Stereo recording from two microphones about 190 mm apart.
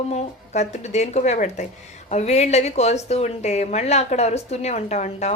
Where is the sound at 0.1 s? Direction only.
35° left (ahead or behind).